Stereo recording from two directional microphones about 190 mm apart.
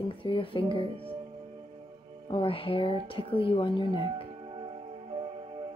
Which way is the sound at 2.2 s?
25° left (ahead or behind).